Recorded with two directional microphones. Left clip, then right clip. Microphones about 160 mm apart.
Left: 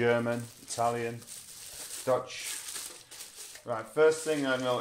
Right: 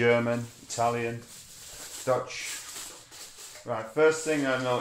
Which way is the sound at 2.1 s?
20° left (ahead or behind).